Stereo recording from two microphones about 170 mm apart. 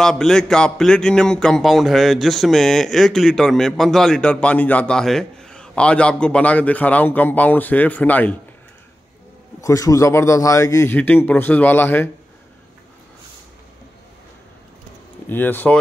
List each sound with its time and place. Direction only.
0.0 s a man's voice: 5° left (ahead or behind)
9.6 s a man's voice: 20° left (ahead or behind)
15.2 s a man's voice: 10° left (ahead or behind)